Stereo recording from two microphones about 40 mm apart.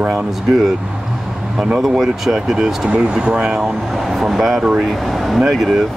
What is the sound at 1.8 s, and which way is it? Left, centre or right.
Speech, centre.